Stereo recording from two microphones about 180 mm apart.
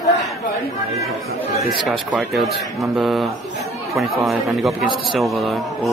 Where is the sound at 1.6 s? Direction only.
Centre (ahead or behind).